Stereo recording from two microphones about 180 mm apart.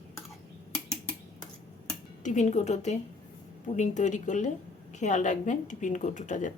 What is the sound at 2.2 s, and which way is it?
A woman's voice, 40° left (ahead or behind).